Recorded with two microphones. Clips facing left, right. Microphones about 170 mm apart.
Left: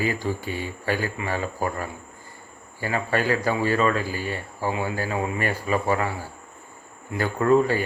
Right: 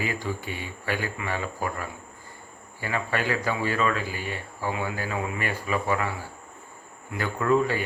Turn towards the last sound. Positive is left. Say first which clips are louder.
# left 4 dB
turn(degrees=40)  # may be behind; listen again after turning